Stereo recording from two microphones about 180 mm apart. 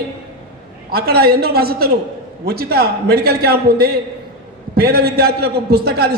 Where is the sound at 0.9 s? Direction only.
60° right (ahead or behind).